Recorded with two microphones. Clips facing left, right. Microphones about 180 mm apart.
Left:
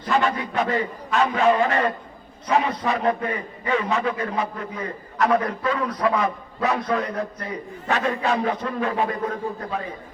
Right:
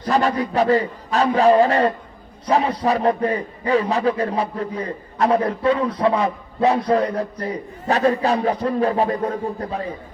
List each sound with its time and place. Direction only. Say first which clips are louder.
0.0 s a man's voice: right 3 dB; 40° right (ahead or behind)